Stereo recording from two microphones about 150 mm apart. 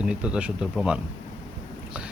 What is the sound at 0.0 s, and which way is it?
Speech, 5° right (ahead or behind).